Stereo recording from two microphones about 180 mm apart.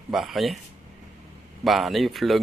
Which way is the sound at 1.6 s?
Centre (ahead or behind).